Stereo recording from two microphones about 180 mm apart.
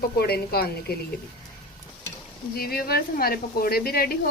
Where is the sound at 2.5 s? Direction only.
55° left (ahead or behind).